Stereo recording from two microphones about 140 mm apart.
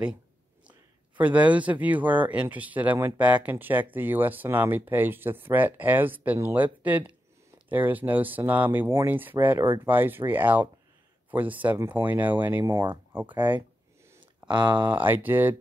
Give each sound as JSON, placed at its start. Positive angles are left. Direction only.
{"t": 0.7, "sound": "a man's voice", "side_deg": -10}
{"t": 12.6, "sound": "speech", "side_deg": -30}
{"t": 13.1, "sound": "a man's voice", "side_deg": -10}
{"t": 14.5, "sound": "speech", "side_deg": -30}
{"t": 14.9, "sound": "a man's voice", "side_deg": -15}